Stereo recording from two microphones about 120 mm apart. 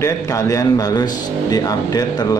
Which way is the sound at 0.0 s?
25° left (ahead or behind).